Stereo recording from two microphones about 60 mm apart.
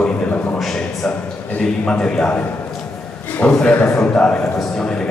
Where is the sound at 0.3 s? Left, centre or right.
Left.